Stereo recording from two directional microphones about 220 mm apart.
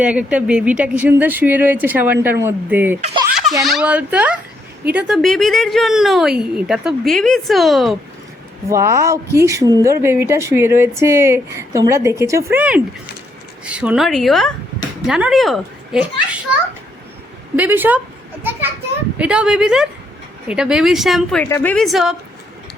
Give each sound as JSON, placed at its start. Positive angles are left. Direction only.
{"t": 0.0, "sound": "speech", "side_deg": -5}
{"t": 3.0, "sound": "speech", "side_deg": -25}
{"t": 3.6, "sound": "a woman's voice", "side_deg": 0}
{"t": 8.7, "sound": "a woman's voice", "side_deg": -15}
{"t": 17.6, "sound": "speech", "side_deg": -10}
{"t": 19.2, "sound": "a woman's voice", "side_deg": -5}